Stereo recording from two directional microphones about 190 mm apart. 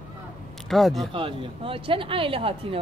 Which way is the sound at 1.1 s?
25° right (ahead or behind).